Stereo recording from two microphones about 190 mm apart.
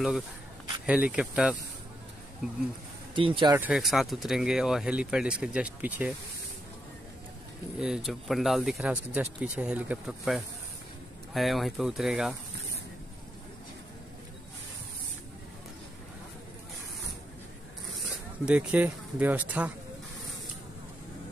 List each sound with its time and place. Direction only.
0.8 s speech: 5° right (ahead or behind)
3.2 s speech: 25° right (ahead or behind)
3.5 s speech: 5° right (ahead or behind)
7.8 s speech: centre (ahead or behind)
18.4 s speech: 5° right (ahead or behind)